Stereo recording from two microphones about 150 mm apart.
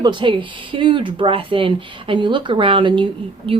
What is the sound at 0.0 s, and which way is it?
A woman's voice, 30° right (ahead or behind).